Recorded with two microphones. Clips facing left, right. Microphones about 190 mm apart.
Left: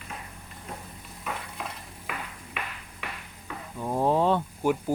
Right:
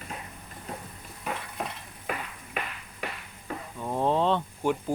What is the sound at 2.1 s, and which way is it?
Ping, 40° right (ahead or behind).